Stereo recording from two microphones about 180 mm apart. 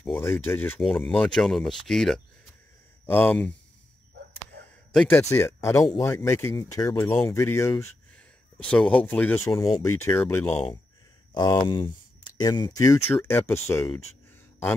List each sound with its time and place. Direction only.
0.2 s speech: 15° left (ahead or behind)
0.7 s speech: centre (ahead or behind)
4.9 s speech: 10° left (ahead or behind)
11.3 s speech: 25° left (ahead or behind)